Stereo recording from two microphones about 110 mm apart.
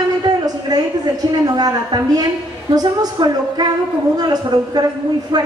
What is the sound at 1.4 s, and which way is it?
A woman's voice, 35° right (ahead or behind).